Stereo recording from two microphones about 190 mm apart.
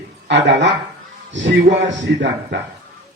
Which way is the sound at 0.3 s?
65° right (ahead or behind).